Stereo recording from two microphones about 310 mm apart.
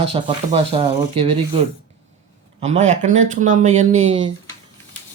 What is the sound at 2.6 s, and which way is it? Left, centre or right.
Speech, right.